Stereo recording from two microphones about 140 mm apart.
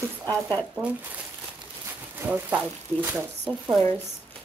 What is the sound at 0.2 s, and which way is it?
Speech, 20° right (ahead or behind).